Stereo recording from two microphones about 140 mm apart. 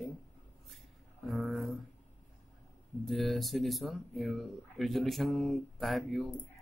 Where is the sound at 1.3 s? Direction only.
Centre (ahead or behind).